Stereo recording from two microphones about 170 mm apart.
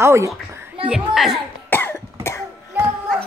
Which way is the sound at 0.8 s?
5° right (ahead or behind).